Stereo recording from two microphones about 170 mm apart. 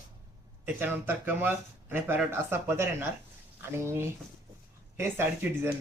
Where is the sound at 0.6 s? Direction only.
10° right (ahead or behind).